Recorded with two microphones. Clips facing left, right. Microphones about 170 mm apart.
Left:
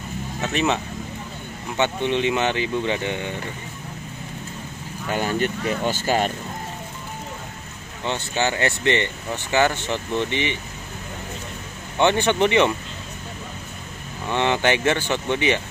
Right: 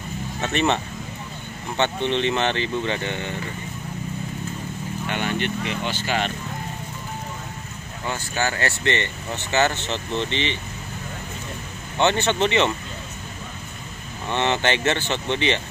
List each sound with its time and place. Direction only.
0.4 s speech: 5° left (ahead or behind)
1.8 s speech: 10° left (ahead or behind)
5.0 s speech: 35° left (ahead or behind)
8.0 s speech: 20° left (ahead or behind)
12.0 s speech: 15° left (ahead or behind)
14.3 s speech: 10° left (ahead or behind)